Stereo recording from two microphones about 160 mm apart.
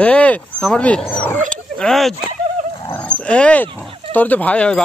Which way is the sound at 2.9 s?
10° left (ahead or behind).